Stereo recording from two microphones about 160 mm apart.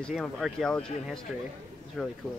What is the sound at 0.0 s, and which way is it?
Speech, centre (ahead or behind).